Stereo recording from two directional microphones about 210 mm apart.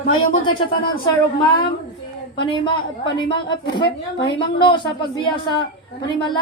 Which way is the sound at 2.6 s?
25° left (ahead or behind).